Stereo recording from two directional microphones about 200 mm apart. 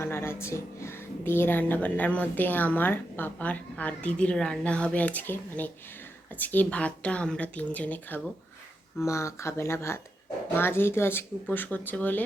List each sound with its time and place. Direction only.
0.0 s speech: 10° left (ahead or behind)